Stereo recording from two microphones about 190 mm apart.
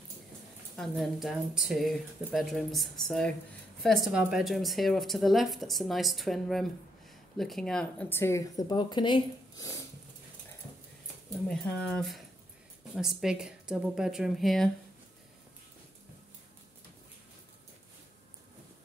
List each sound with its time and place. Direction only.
0.7 s a woman's voice: centre (ahead or behind); by 9.8 s 20° left (ahead or behind)
11.4 s a woman's voice: 5° left (ahead or behind)